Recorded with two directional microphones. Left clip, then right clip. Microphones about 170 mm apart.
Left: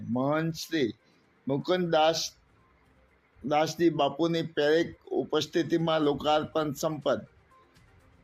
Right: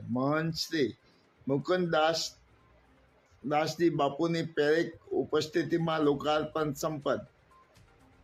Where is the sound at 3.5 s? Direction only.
15° left (ahead or behind).